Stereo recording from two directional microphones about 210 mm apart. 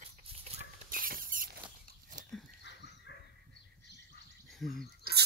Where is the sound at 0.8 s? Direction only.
45° right (ahead or behind).